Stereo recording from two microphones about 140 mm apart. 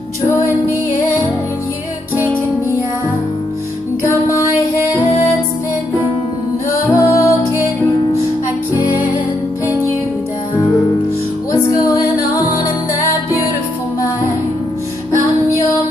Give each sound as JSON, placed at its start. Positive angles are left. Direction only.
{"t": 4.0, "sound": "music", "side_deg": 20}
{"t": 6.7, "sound": "music", "side_deg": 20}
{"t": 11.7, "sound": "music", "side_deg": 25}